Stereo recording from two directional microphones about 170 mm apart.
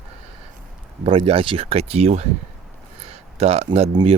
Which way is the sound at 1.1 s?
35° right (ahead or behind).